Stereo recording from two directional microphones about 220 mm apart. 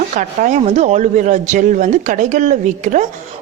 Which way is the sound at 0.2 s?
35° right (ahead or behind).